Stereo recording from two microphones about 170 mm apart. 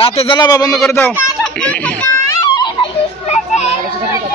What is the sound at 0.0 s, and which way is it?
Speech, 35° left (ahead or behind).